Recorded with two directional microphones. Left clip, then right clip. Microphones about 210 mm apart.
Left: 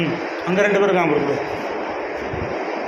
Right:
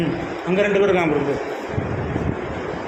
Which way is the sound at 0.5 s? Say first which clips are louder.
Left 1 dB; 25° right (ahead or behind).